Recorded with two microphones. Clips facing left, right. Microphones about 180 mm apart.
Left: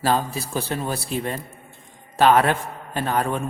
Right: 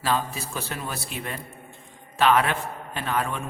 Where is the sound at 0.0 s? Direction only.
35° left (ahead or behind).